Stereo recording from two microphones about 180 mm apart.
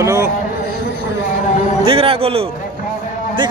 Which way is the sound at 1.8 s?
30° right (ahead or behind).